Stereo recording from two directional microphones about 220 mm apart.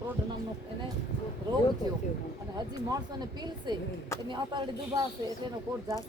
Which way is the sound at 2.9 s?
20° right (ahead or behind).